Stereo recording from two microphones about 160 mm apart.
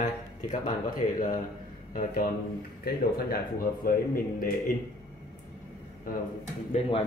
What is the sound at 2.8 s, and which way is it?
Speech, 70° left (ahead or behind).